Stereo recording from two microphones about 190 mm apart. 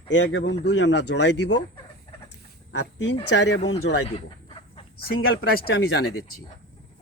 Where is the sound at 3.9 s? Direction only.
90° left.